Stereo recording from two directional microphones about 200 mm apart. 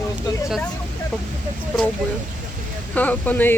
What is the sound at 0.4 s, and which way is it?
Speech, centre (ahead or behind).